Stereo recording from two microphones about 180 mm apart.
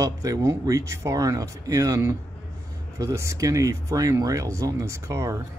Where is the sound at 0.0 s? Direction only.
20° right (ahead or behind).